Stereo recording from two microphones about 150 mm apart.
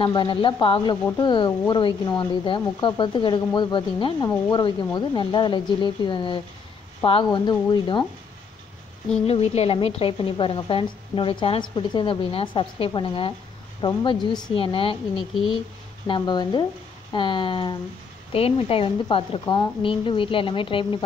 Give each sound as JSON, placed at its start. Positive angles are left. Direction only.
{"t": 0.0, "sound": "speech", "side_deg": 30}
{"t": 9.3, "sound": "speech", "side_deg": 40}
{"t": 16.1, "sound": "speech", "side_deg": 30}